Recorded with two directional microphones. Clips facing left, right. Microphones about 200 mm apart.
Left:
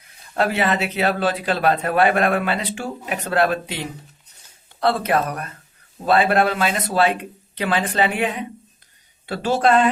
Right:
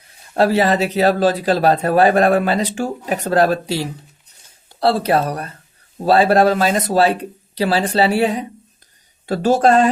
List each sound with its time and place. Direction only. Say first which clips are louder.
0.3 s speech: right 5 dB; 35° right (ahead or behind)